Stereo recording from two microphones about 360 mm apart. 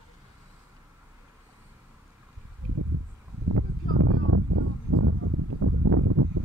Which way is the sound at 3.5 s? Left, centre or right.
Right.